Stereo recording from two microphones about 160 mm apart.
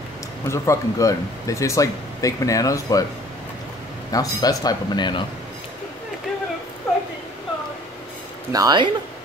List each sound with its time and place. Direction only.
0.5 s speech: 20° left (ahead or behind)
4.1 s speech: 20° left (ahead or behind)
8.5 s speech: 25° right (ahead or behind)